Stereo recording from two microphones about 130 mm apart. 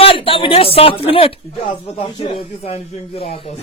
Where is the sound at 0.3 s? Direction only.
45° left (ahead or behind).